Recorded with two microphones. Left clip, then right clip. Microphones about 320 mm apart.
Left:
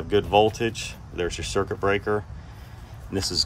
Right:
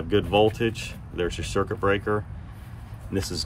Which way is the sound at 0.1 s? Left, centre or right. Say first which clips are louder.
Left 1 dB; centre.